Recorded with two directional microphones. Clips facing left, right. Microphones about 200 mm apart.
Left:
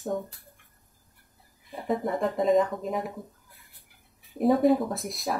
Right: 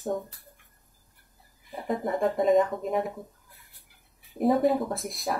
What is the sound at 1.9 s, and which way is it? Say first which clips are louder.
Speech: even; centre (ahead or behind).